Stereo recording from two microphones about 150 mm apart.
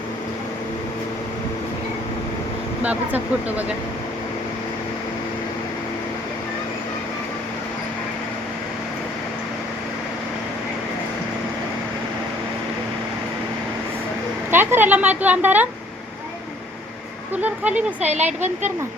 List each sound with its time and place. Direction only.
2.8 s speech: 10° right (ahead or behind)
14.5 s a sound: 15° right (ahead or behind)
17.3 s speech: 10° right (ahead or behind)
18.0 s speech: 50° right (ahead or behind)